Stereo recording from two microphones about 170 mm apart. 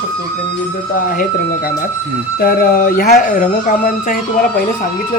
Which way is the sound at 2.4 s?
60° left (ahead or behind).